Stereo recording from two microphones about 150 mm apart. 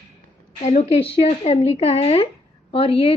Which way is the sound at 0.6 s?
50° left (ahead or behind).